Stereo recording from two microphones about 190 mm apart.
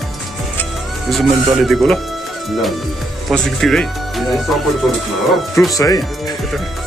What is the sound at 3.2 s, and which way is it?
Speech, centre (ahead or behind).